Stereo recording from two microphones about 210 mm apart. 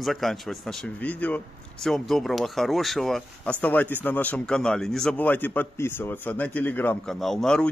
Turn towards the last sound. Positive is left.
turn(degrees=5)  # may be behind; listen again after turning